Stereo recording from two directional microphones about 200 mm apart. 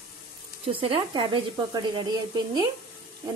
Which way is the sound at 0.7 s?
25° right (ahead or behind).